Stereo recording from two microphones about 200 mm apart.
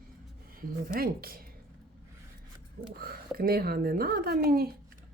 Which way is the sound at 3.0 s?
50° right (ahead or behind).